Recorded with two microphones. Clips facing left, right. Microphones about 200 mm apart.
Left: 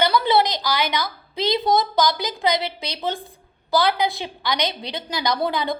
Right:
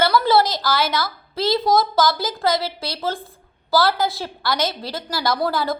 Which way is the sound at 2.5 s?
5° right (ahead or behind).